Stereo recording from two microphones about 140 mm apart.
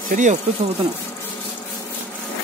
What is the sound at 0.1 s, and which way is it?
Speech, 60° right (ahead or behind).